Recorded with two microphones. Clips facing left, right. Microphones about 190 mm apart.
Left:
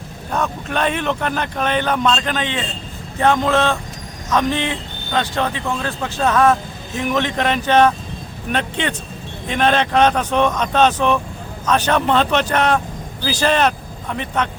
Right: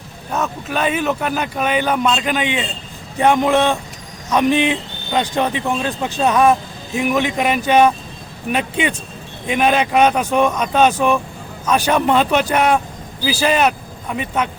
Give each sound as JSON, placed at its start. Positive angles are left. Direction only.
{"t": 0.3, "sound": "speech", "side_deg": -5}